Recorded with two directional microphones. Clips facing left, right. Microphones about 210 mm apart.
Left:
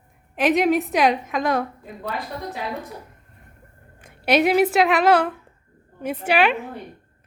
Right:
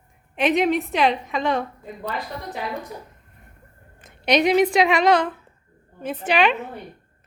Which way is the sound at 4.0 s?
10° left (ahead or behind).